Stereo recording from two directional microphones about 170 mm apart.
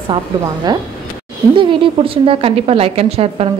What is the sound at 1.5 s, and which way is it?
A woman's voice, 30° right (ahead or behind).